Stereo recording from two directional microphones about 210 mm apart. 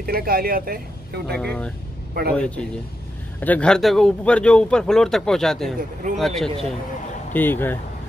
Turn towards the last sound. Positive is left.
turn(degrees=10)  # may be behind; listen again after turning